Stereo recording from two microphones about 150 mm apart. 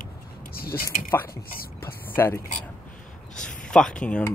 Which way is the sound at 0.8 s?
15° left (ahead or behind).